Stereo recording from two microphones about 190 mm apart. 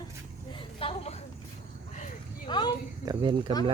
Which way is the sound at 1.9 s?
40° left (ahead or behind).